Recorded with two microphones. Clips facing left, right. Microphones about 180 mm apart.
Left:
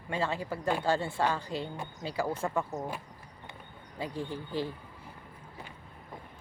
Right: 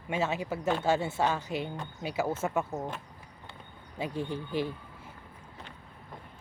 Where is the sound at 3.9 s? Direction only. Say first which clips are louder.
Right 2 dB; 20° right (ahead or behind).